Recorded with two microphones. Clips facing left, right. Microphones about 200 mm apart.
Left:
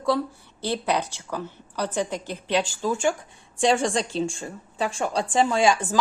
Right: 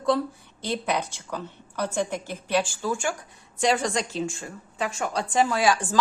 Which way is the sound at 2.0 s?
10° right (ahead or behind).